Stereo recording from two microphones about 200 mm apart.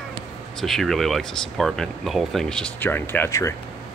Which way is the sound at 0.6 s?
Centre (ahead or behind).